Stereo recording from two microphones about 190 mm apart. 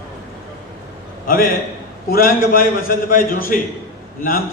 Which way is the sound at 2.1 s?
50° left (ahead or behind).